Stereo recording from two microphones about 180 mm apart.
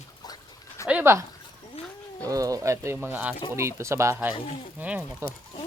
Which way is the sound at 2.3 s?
20° right (ahead or behind).